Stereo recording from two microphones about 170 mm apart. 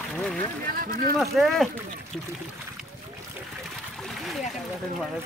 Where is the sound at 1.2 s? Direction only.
Centre (ahead or behind).